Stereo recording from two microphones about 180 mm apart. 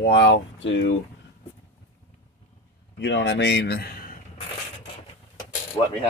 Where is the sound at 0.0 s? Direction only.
70° left (ahead or behind); by 0.9 s 85° left.